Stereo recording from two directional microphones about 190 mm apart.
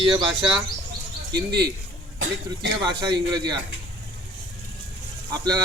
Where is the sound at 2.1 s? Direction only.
90° right.